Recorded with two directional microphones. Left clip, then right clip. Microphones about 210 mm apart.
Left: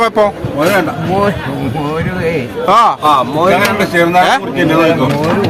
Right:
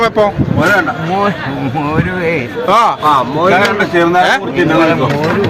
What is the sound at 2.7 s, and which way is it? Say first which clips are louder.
Speech: left 1 dB; 10° left (ahead or behind).